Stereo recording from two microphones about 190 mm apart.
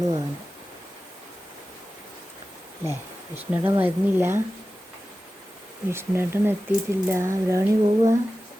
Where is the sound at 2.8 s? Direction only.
10° right (ahead or behind).